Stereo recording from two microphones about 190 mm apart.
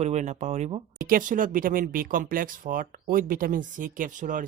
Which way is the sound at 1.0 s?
50° right (ahead or behind).